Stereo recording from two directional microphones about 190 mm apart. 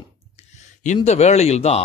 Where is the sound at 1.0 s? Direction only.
35° left (ahead or behind).